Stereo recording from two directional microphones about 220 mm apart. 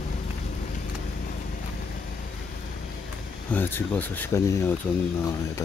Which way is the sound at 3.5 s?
10° left (ahead or behind).